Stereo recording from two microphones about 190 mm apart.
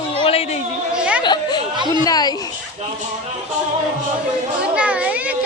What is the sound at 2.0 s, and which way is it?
Speech, 20° left (ahead or behind).